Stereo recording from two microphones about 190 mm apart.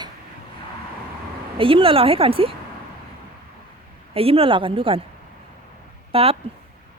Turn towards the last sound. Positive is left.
turn(degrees=-30)  # may be behind; listen again after turning